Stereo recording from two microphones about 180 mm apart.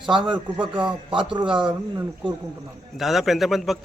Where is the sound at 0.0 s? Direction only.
25° right (ahead or behind).